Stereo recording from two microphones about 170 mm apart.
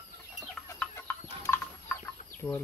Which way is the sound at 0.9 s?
15° left (ahead or behind).